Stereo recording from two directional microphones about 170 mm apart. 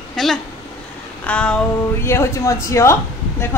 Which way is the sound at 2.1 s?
15° left (ahead or behind).